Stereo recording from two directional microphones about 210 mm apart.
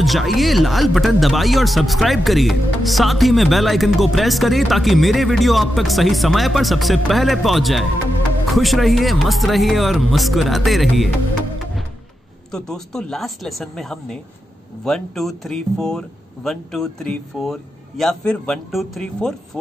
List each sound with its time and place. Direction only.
0.0 s speech: centre (ahead or behind)
12.4 s speech: 5° left (ahead or behind)